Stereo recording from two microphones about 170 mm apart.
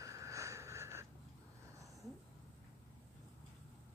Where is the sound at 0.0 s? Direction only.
20° right (ahead or behind).